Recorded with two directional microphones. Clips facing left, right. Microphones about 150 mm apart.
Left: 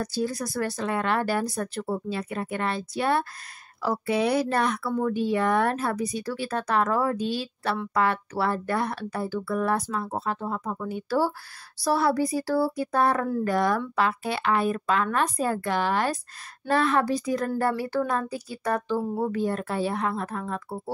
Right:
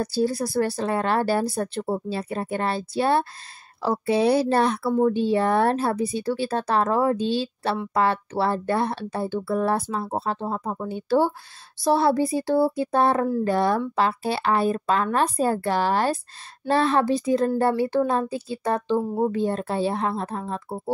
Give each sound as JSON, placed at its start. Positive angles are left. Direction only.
{"t": 0.0, "sound": "speech", "side_deg": -30}